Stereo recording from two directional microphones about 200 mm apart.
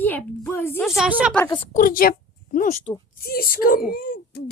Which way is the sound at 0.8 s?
5° right (ahead or behind).